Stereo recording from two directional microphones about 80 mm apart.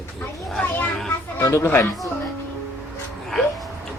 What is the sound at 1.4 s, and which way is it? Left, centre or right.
Speech, left.